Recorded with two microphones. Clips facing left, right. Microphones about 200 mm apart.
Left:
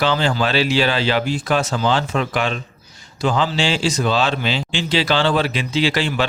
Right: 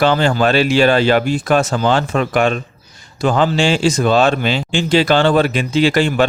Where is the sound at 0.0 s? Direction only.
50° right (ahead or behind).